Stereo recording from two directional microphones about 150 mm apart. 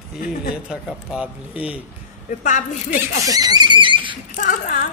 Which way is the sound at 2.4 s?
55° left (ahead or behind).